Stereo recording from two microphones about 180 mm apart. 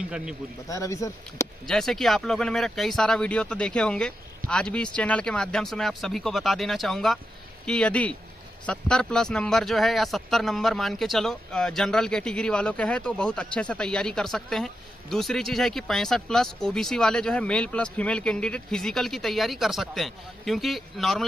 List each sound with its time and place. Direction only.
0.1 s speech: 5° right (ahead or behind)
0.7 s speech: 15° left (ahead or behind)
1.7 s speech: centre (ahead or behind)